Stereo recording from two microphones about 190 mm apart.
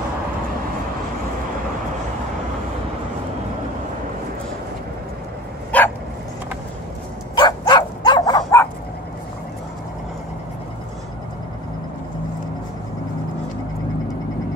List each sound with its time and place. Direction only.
5.7 s dog: 10° left (ahead or behind)
7.3 s dog: 20° left (ahead or behind)